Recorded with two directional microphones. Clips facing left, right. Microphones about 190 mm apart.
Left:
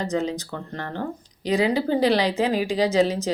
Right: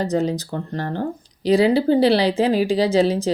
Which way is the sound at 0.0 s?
35° right (ahead or behind).